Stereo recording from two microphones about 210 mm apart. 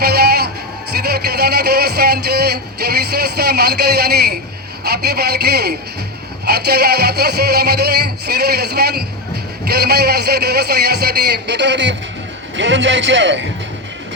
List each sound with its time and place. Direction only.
0.0 s music: 50° right (ahead or behind)
1.0 s a sound: 50° right (ahead or behind)
4.8 s a man's voice: 50° right (ahead or behind)
6.4 s music: 50° right (ahead or behind)
12.5 s a man's voice: 65° right (ahead or behind)